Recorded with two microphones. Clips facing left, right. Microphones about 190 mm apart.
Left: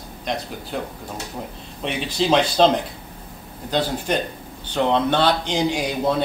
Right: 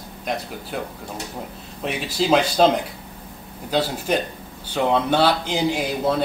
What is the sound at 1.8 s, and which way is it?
Speech, 5° right (ahead or behind).